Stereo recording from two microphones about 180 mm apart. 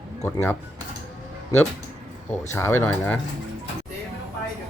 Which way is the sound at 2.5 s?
15° left (ahead or behind).